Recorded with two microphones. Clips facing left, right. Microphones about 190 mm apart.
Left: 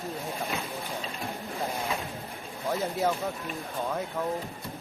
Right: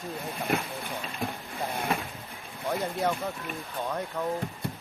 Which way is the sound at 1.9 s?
60° right (ahead or behind).